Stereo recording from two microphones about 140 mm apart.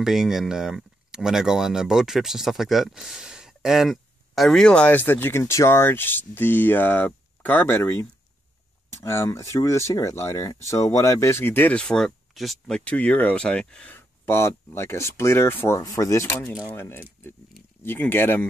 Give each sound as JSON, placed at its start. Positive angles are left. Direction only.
{"t": 0.0, "sound": "speech", "side_deg": -5}